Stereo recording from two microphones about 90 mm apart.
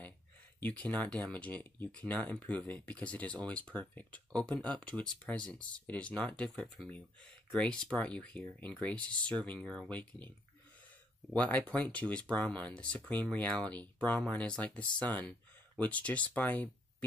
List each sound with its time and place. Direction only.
0.6 s speech: 20° left (ahead or behind)
11.3 s speech: 15° left (ahead or behind)